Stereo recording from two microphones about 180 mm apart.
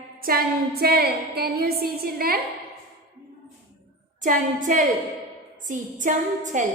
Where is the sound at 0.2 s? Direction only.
55° right (ahead or behind).